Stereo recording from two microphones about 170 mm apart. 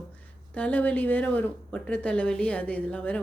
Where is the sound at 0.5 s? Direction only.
10° left (ahead or behind).